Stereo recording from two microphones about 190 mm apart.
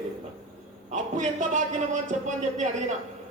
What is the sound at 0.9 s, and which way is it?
A man's voice, 40° right (ahead or behind).